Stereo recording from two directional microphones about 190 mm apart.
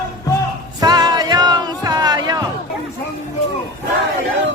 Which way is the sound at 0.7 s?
20° right (ahead or behind).